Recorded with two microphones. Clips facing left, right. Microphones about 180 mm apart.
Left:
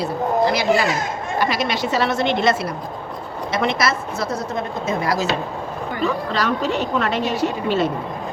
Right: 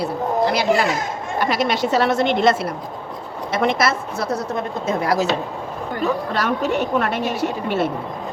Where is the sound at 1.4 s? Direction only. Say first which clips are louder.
Right 2 dB; 55° right (ahead or behind).